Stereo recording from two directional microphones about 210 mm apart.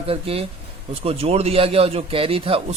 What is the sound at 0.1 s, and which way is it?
A man's voice, 30° right (ahead or behind).